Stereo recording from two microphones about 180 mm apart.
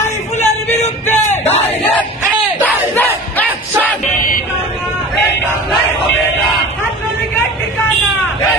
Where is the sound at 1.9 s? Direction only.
10° left (ahead or behind).